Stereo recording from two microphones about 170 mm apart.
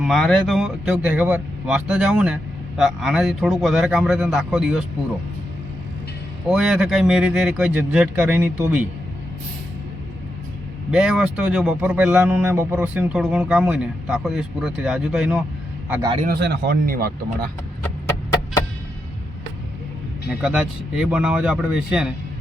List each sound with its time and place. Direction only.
0.0 s speech: centre (ahead or behind)
6.5 s speech: 5° right (ahead or behind)
10.9 s speech: 5° right (ahead or behind)
15.9 s a man's voice: 20° right (ahead or behind)
16.2 s speech: 70° right (ahead or behind)
20.4 s speech: 5° right (ahead or behind)